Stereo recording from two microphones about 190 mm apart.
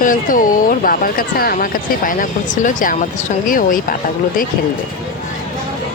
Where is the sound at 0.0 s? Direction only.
45° left (ahead or behind).